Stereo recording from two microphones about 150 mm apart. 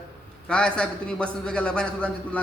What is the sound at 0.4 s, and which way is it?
A man's voice, 5° left (ahead or behind).